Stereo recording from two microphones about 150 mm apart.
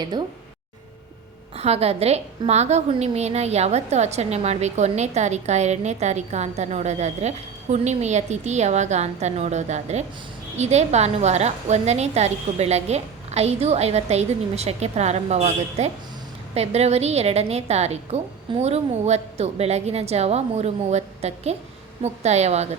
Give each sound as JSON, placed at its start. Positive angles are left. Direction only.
{"t": 0.0, "sound": "speech", "side_deg": -30}
{"t": 1.5, "sound": "a woman's voice", "side_deg": -45}